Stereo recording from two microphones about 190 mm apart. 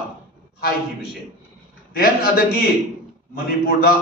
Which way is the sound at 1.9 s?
50° left (ahead or behind).